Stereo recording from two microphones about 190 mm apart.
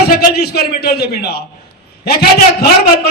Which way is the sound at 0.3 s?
55° left (ahead or behind).